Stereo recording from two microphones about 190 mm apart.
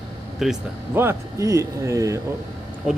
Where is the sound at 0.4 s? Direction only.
Centre (ahead or behind).